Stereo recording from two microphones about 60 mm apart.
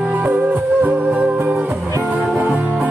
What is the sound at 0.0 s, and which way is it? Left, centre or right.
Music, right.